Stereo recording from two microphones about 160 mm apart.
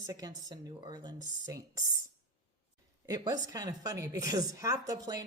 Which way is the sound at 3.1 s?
20° right (ahead or behind).